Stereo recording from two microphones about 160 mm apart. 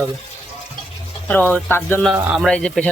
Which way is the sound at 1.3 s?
10° left (ahead or behind).